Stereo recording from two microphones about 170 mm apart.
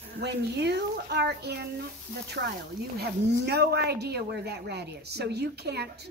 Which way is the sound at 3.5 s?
70° right (ahead or behind).